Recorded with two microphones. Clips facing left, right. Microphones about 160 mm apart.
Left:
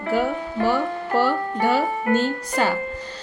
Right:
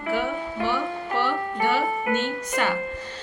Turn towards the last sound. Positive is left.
turn(degrees=35)  # may be behind; listen again after turning